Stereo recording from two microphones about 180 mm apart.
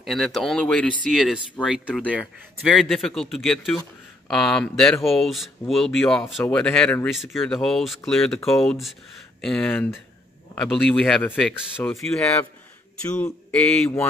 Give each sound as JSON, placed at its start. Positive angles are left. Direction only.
{"t": 0.0, "sound": "speech", "side_deg": 0}
{"t": 1.9, "sound": "speech", "side_deg": 5}